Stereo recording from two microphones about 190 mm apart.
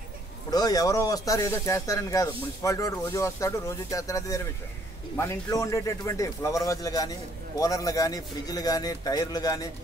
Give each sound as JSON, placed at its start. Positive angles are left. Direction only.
{"t": 0.5, "sound": "a man's voice", "side_deg": 20}